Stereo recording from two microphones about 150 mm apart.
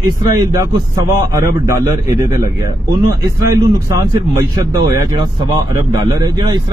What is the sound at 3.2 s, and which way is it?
Speech, 20° right (ahead or behind).